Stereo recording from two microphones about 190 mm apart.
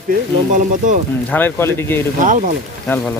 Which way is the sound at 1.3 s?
10° left (ahead or behind).